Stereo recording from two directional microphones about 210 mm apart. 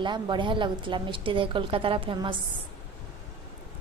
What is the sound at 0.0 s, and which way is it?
A woman's voice, 20° right (ahead or behind).